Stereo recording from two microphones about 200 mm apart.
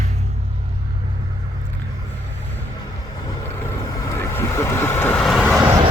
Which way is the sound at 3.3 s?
15° left (ahead or behind).